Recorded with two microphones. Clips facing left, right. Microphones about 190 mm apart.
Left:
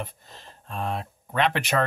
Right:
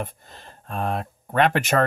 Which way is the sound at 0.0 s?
50° right (ahead or behind).